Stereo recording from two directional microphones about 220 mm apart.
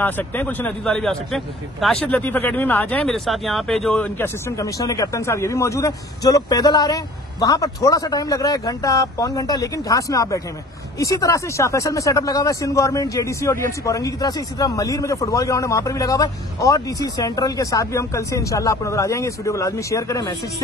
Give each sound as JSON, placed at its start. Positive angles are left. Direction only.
{"t": 0.0, "sound": "a man's voice", "side_deg": 10}